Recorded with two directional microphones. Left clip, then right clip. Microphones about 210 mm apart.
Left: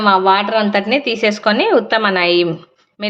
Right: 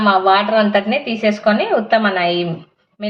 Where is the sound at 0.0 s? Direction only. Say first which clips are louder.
Left 1 dB; 35° left (ahead or behind).